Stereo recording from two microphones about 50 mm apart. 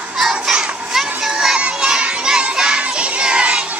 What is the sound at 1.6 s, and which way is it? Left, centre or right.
Children shouting, centre.